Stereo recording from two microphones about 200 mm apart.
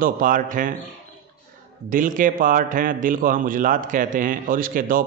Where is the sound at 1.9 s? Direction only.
40° right (ahead or behind).